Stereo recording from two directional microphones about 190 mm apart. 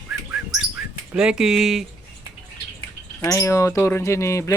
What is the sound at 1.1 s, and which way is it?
Speech, 5° right (ahead or behind).